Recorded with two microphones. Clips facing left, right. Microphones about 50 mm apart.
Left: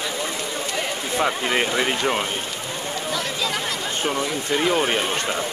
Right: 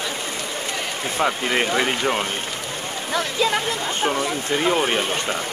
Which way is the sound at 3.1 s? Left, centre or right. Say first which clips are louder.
Right 6 dB; right.